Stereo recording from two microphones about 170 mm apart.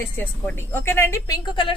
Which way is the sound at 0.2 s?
10° left (ahead or behind).